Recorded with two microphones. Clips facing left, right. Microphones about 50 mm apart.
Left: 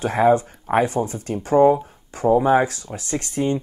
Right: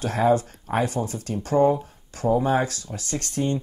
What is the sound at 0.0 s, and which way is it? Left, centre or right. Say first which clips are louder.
Speech: left 4 dB; left.